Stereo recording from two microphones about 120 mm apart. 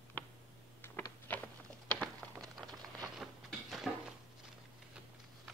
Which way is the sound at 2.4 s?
Centre (ahead or behind).